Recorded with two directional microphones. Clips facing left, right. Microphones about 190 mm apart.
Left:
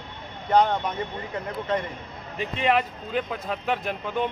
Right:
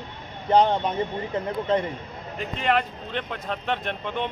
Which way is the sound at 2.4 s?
5° left (ahead or behind).